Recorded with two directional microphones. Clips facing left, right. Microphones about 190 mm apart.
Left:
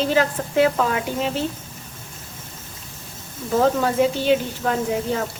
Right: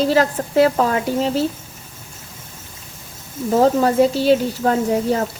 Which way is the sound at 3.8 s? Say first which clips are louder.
Right 4 dB; 35° right (ahead or behind).